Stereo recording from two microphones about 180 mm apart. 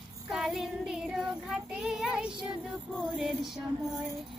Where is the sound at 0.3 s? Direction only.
5° right (ahead or behind).